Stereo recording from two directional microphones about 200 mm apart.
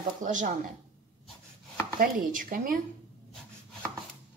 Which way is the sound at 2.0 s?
45° right (ahead or behind).